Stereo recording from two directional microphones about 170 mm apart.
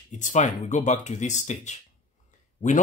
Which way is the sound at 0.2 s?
45° left (ahead or behind).